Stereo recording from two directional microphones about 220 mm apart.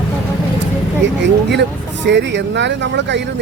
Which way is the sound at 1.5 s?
50° right (ahead or behind).